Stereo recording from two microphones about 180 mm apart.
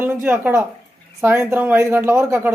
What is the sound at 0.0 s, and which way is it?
A man's voice, 10° right (ahead or behind).